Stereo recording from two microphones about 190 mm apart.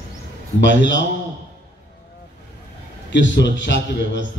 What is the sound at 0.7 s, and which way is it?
Speech, 70° left (ahead or behind).